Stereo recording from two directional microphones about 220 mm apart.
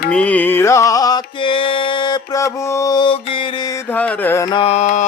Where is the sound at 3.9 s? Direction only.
5° left (ahead or behind); by 5.0 s 35° left (ahead or behind).